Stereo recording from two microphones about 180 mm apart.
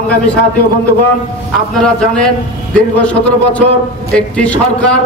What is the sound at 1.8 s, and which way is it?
A man's voice, 5° left (ahead or behind).